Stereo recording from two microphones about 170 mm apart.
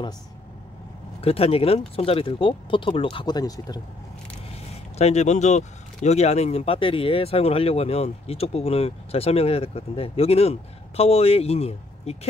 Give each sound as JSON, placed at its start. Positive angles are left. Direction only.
{"t": 1.2, "sound": "speech", "side_deg": 35}
{"t": 4.9, "sound": "speech", "side_deg": 40}